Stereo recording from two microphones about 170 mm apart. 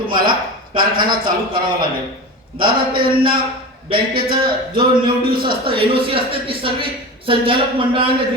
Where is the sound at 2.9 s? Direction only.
60° right (ahead or behind).